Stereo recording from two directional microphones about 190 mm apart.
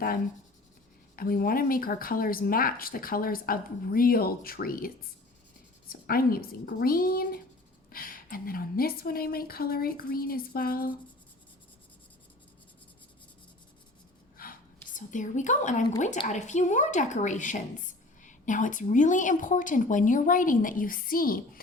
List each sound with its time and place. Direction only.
1.1 s speech: 50° left (ahead or behind)
5.9 s speech: 50° left (ahead or behind)
14.4 s a sound: 50° left (ahead or behind)
14.9 s speech: 40° left (ahead or behind)